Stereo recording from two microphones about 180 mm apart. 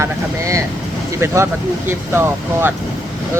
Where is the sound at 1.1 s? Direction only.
15° right (ahead or behind).